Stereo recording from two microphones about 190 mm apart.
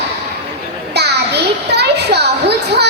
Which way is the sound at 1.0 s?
60° right (ahead or behind).